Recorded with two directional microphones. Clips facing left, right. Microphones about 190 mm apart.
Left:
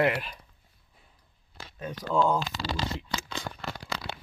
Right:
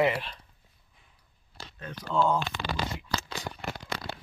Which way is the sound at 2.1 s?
Centre (ahead or behind).